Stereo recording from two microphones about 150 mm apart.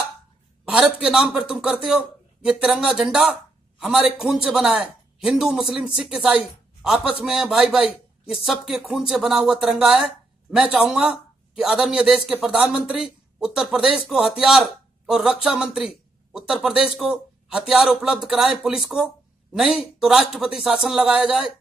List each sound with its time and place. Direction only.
1.0 s a man's voice: 5° right (ahead or behind)